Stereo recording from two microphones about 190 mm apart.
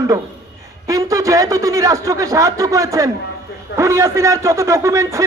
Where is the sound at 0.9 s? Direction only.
15° right (ahead or behind).